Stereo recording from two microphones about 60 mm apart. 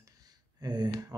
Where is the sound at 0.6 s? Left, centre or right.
Right.